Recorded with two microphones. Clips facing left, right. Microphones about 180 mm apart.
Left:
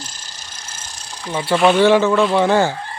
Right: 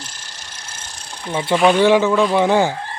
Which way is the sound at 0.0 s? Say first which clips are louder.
Even; 65° right (ahead or behind).